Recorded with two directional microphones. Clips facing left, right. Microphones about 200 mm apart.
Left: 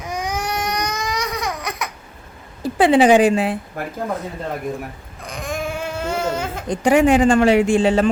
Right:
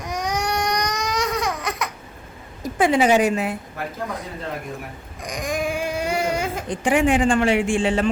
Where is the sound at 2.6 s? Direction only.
30° left (ahead or behind).